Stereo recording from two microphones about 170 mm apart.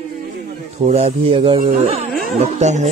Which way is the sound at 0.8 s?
40° right (ahead or behind).